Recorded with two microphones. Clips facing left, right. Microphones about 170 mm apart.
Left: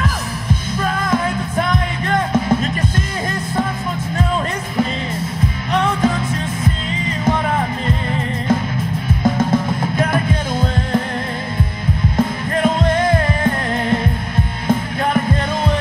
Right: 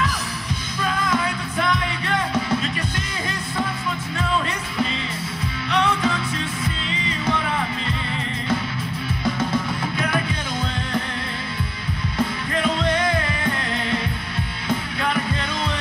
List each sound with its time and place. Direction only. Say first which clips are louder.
1.1 s music: left 5 dB; 45° left (ahead or behind)
5.7 s music: left 4 dB; 45° left (ahead or behind)
9.2 s music: left 6 dB; 45° left (ahead or behind)
12.2 s music: left 5 dB; 45° left (ahead or behind)